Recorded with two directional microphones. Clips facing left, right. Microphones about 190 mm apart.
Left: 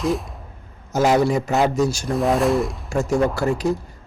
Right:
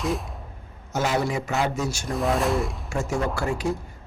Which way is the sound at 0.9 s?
40° left (ahead or behind).